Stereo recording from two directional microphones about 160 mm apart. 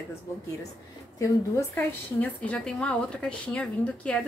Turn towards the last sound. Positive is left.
turn(degrees=5)  # may be behind; listen again after turning